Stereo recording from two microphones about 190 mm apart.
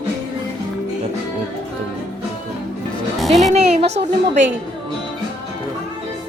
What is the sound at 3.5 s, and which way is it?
Speech, 35° right (ahead or behind).